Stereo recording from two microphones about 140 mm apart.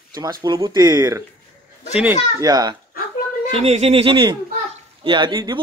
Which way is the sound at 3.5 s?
45° right (ahead or behind).